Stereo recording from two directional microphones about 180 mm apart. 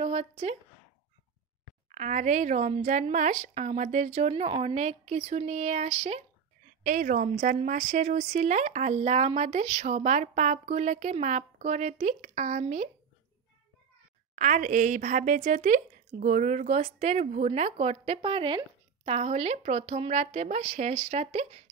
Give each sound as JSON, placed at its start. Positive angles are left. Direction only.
{"t": 0.0, "sound": "speech", "side_deg": -35}
{"t": 1.9, "sound": "a woman's voice", "side_deg": -40}
{"t": 6.8, "sound": "a woman's voice", "side_deg": -50}
{"t": 14.3, "sound": "a woman's voice", "side_deg": -45}